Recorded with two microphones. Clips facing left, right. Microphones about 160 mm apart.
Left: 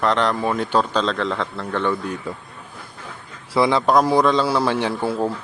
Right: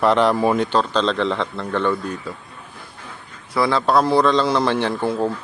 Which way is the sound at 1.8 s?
15° left (ahead or behind).